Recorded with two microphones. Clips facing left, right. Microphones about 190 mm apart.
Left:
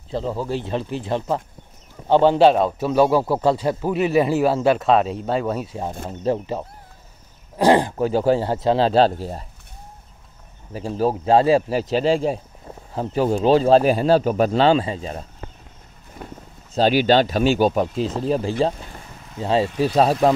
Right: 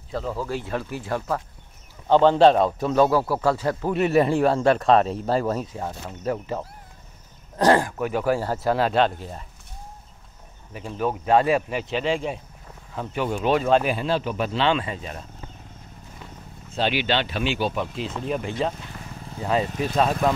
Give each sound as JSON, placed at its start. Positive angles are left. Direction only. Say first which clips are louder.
{"t": 0.1, "sound": "a man's voice", "louder": "left 3 dB", "side_deg": 25}
{"t": 3.1, "sound": "speech", "louder": "left 3 dB", "side_deg": 20}
{"t": 3.9, "sound": "speech", "louder": "left 1 dB", "side_deg": 0}
{"t": 6.0, "sound": "speech", "louder": "left 6 dB", "side_deg": 30}
{"t": 7.8, "sound": "speech", "louder": "left 5 dB", "side_deg": 30}
{"t": 10.7, "sound": "speech", "louder": "left 5 dB", "side_deg": 35}
{"t": 16.2, "sound": "a sound", "louder": "left 8 dB", "side_deg": 50}
{"t": 16.7, "sound": "speech", "louder": "left 8 dB", "side_deg": 40}